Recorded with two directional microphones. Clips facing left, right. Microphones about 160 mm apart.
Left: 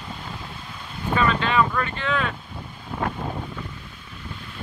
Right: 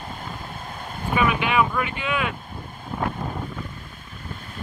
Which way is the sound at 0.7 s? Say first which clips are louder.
Right 4 dB; 50° right (ahead or behind).